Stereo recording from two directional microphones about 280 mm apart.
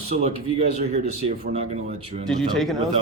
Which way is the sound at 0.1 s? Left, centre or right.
Right.